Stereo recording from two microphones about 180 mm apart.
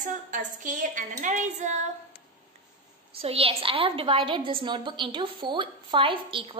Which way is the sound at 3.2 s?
30° right (ahead or behind).